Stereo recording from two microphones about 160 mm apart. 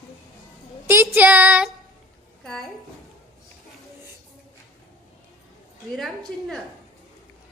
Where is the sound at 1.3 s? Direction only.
10° right (ahead or behind).